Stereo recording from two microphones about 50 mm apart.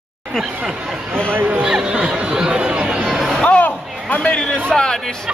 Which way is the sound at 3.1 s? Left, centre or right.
Centre.